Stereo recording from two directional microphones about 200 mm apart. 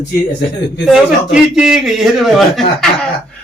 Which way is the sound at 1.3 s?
5° right (ahead or behind).